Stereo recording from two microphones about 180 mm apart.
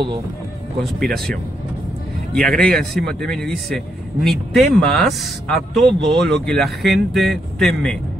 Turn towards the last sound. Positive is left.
turn(degrees=0)  # may be behind; listen again after turning